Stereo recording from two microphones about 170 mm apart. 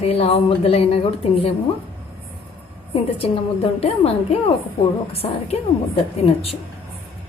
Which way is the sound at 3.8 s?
35° left (ahead or behind).